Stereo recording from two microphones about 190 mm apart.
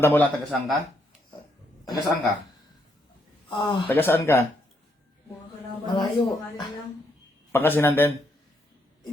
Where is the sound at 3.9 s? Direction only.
10° left (ahead or behind).